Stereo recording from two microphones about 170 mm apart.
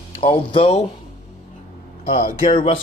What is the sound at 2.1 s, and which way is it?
Speech, 50° left (ahead or behind).